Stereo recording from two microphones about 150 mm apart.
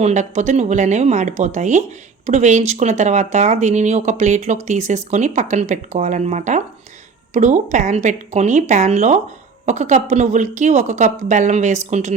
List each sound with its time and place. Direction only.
0.0 s speech: 50° right (ahead or behind)